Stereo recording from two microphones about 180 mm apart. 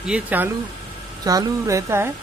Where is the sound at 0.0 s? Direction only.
5° right (ahead or behind).